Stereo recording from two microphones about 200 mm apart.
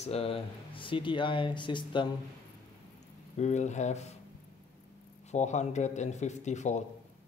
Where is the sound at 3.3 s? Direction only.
35° left (ahead or behind).